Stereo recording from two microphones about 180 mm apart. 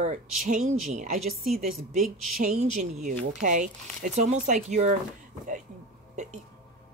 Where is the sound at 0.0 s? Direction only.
45° right (ahead or behind).